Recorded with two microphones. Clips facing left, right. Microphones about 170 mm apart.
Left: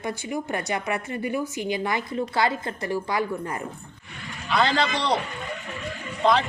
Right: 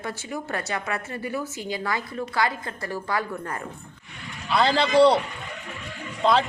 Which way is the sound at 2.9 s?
15° left (ahead or behind).